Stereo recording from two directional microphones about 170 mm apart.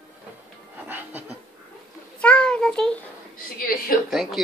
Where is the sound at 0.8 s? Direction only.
10° right (ahead or behind).